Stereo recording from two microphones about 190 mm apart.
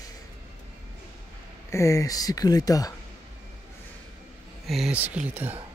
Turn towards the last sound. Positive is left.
turn(degrees=-5)  # may be behind; listen again after turning